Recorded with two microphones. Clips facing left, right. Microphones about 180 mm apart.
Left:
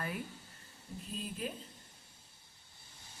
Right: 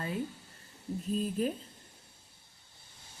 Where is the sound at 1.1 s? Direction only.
40° right (ahead or behind).